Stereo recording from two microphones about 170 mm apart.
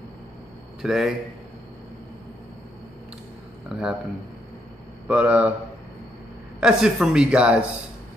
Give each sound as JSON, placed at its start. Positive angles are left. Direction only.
{"t": 0.8, "sound": "speech", "side_deg": 0}
{"t": 3.6, "sound": "speech", "side_deg": 0}
{"t": 5.0, "sound": "speech", "side_deg": -5}
{"t": 6.6, "sound": "speech", "side_deg": -5}